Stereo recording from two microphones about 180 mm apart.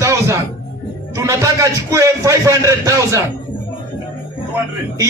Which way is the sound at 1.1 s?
15° right (ahead or behind).